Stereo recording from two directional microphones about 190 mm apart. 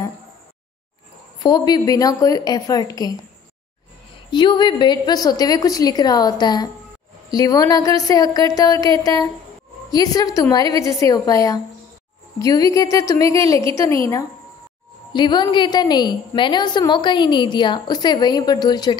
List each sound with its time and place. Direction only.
1.4 s a woman's voice: 20° left (ahead or behind)
4.3 s a woman's voice: 25° left (ahead or behind)